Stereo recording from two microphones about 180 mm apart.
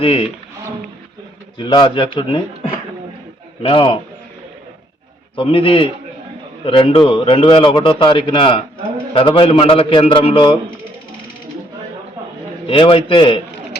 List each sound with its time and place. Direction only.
0.0 s a man's voice: 30° left (ahead or behind)
1.5 s a man's voice: 25° left (ahead or behind)
3.6 s a man's voice: 30° left (ahead or behind)
5.4 s a man's voice: 30° left (ahead or behind)
12.6 s a man's voice: 30° left (ahead or behind)